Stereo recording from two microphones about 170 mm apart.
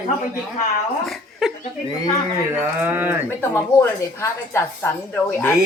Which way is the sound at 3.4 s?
10° left (ahead or behind).